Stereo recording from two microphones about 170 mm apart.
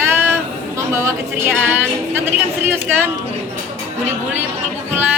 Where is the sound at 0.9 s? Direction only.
15° right (ahead or behind).